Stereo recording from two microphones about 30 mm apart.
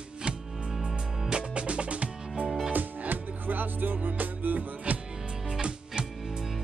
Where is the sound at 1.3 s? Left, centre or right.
Right.